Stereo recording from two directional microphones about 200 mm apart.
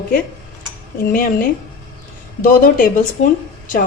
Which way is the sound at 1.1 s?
45° left (ahead or behind).